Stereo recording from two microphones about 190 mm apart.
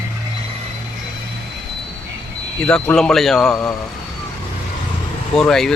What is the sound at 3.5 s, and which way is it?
Speech, 15° left (ahead or behind).